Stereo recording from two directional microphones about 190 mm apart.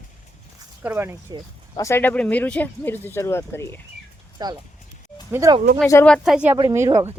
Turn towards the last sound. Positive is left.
turn(degrees=-15)  # may be behind; listen again after turning